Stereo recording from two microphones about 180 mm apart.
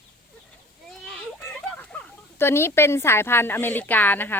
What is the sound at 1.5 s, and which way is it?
Speech, 10° left (ahead or behind).